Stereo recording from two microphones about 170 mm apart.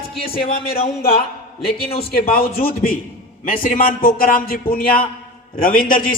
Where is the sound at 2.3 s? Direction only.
60° left (ahead or behind).